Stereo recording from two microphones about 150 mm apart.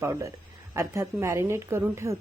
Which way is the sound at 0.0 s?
20° right (ahead or behind).